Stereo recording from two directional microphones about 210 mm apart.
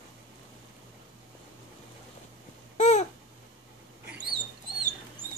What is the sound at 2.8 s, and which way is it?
Babbling, 35° left (ahead or behind).